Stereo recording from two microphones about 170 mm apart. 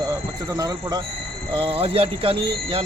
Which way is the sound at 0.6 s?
20° right (ahead or behind).